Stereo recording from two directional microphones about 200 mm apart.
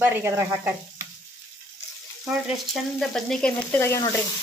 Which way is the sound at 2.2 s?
Centre (ahead or behind).